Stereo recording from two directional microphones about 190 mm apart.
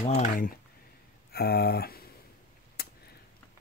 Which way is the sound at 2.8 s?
55° left (ahead or behind).